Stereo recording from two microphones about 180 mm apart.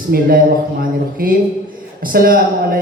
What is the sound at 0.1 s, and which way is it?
A man's voice, 60° right (ahead or behind).